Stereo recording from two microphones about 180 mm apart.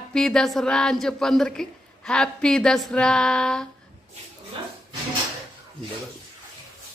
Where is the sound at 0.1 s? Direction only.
5° left (ahead or behind).